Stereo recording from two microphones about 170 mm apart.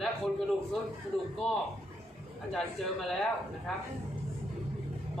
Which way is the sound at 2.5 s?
Centre (ahead or behind).